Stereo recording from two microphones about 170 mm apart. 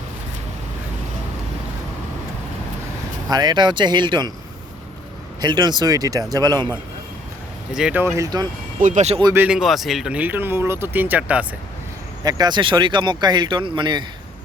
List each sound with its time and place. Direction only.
3.2 s speech: 25° right (ahead or behind)
5.4 s speech: 25° right (ahead or behind)
7.7 s speech: 5° right (ahead or behind)
8.0 s speech: 20° right (ahead or behind)
8.8 s speech: 45° right (ahead or behind)
9.2 s speech: 10° right (ahead or behind)
12.2 s speech: 25° right (ahead or behind)